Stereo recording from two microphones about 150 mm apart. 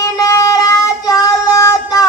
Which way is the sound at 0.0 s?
20° left (ahead or behind).